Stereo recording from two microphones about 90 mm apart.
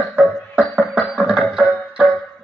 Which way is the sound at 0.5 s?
10° right (ahead or behind).